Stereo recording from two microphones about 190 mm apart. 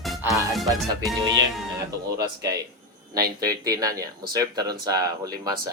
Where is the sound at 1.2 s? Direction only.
20° right (ahead or behind).